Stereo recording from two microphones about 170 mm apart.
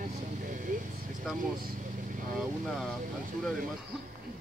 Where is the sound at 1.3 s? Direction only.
Centre (ahead or behind).